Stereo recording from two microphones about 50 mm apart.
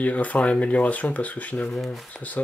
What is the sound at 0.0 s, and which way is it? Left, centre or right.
Speech, left.